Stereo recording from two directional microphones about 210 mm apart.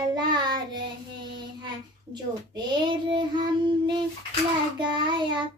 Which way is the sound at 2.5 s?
20° right (ahead or behind).